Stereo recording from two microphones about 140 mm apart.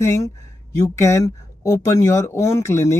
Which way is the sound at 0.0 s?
20° left (ahead or behind).